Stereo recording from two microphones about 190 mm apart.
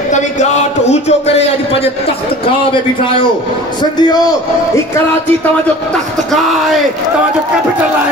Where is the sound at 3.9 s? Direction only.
20° left (ahead or behind).